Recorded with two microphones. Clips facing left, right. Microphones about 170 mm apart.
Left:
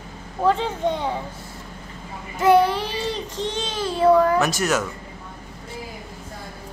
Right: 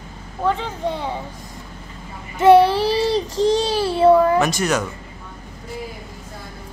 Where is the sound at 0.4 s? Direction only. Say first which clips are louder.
Left 2 dB; centre (ahead or behind).